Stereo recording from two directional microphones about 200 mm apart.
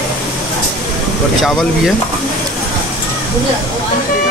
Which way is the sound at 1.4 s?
Centre (ahead or behind).